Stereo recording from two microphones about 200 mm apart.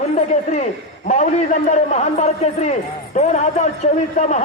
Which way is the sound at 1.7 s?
35° left (ahead or behind).